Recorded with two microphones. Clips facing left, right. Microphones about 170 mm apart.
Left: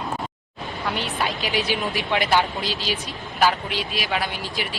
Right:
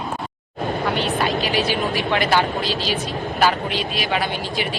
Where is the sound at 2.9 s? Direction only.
40° right (ahead or behind).